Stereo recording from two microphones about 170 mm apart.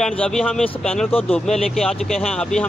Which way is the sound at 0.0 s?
5° left (ahead or behind).